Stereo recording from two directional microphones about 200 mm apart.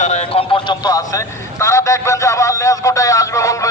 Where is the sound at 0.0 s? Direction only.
35° left (ahead or behind).